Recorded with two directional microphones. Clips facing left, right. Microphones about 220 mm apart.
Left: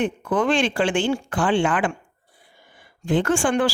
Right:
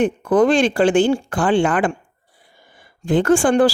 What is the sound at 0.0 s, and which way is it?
A woman's voice, 40° right (ahead or behind).